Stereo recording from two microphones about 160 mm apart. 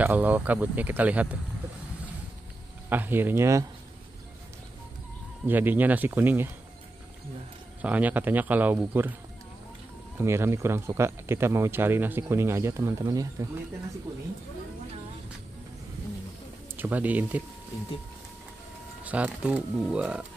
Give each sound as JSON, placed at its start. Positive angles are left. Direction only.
{"t": 0.0, "sound": "speech", "side_deg": -10}
{"t": 2.9, "sound": "speech", "side_deg": -10}
{"t": 5.5, "sound": "speech", "side_deg": -10}
{"t": 7.8, "sound": "speech", "side_deg": -10}
{"t": 10.1, "sound": "speech", "side_deg": -15}
{"t": 16.7, "sound": "speech", "side_deg": -10}
{"t": 19.0, "sound": "speech", "side_deg": -10}